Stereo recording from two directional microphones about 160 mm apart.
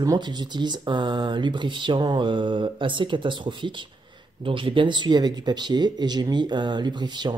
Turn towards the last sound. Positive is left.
turn(degrees=-25)  # may be behind; listen again after turning